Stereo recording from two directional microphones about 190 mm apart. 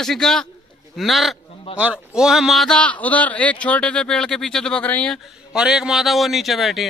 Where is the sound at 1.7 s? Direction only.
30° left (ahead or behind).